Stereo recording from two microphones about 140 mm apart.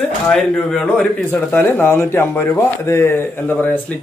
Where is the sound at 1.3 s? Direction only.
15° left (ahead or behind).